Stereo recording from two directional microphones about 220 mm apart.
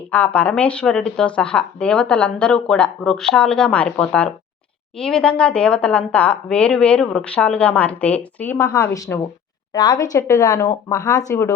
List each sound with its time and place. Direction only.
0.1 s a woman's voice: 5° left (ahead or behind)